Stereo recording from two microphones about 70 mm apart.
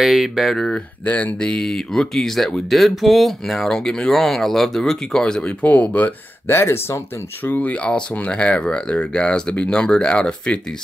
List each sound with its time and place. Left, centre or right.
0.0 s speech: centre
0.7 s speech: left
1.5 s speech: centre
6.5 s speech: left
7.4 s speech: left